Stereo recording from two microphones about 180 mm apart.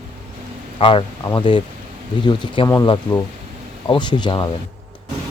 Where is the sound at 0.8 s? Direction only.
30° left (ahead or behind).